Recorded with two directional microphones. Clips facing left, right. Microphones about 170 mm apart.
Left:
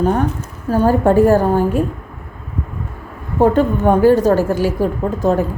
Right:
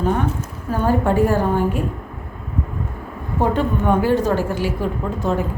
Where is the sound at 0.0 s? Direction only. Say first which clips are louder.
Left 4 dB; 40° left (ahead or behind).